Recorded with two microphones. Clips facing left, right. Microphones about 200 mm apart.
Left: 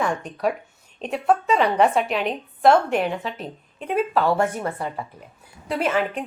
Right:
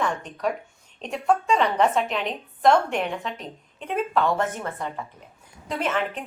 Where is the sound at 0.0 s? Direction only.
10° left (ahead or behind).